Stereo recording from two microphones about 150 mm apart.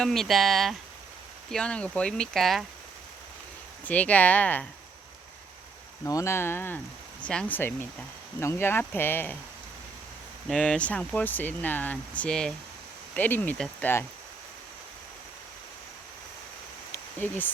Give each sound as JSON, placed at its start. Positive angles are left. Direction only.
{"t": 0.0, "sound": "speech", "side_deg": 0}
{"t": 3.8, "sound": "speech", "side_deg": 10}
{"t": 6.1, "sound": "speech", "side_deg": 20}
{"t": 10.5, "sound": "speech", "side_deg": 5}
{"t": 16.9, "sound": "a sound", "side_deg": 10}